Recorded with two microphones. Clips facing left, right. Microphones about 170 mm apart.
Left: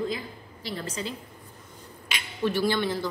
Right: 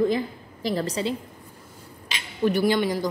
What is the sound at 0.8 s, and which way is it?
Speech, 30° right (ahead or behind).